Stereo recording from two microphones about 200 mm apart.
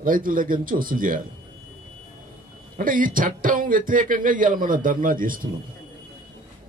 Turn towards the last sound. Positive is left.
turn(degrees=-45)  # may be behind; listen again after turning